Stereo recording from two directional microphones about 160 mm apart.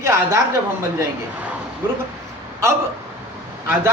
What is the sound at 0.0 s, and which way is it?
Speech, 15° right (ahead or behind).